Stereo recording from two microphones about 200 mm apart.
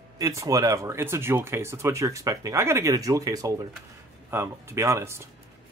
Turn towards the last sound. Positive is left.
turn(degrees=-15)  # may be behind; listen again after turning